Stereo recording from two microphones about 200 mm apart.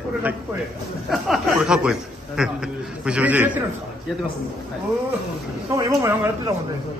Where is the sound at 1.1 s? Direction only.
Centre (ahead or behind).